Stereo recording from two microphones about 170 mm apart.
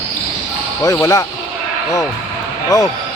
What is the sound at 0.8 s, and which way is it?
Speech, 20° left (ahead or behind).